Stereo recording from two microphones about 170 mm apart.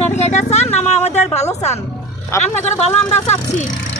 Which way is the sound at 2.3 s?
15° left (ahead or behind).